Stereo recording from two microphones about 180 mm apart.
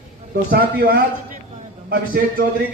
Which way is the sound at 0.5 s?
60° right (ahead or behind).